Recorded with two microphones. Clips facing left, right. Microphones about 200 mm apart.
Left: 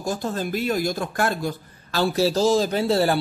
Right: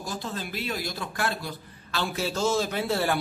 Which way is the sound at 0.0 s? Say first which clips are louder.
Left 8 dB; 45° left (ahead or behind).